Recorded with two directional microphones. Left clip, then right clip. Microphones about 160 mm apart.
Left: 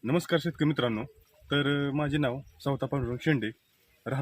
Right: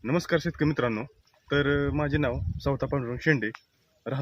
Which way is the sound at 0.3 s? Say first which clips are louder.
Right 2 dB; 30° right (ahead or behind).